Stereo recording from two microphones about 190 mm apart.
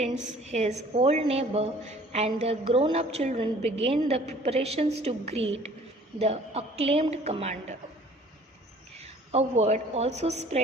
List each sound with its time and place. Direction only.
0.0 s a woman's voice: 35° right (ahead or behind)
9.0 s a woman's voice: 35° right (ahead or behind)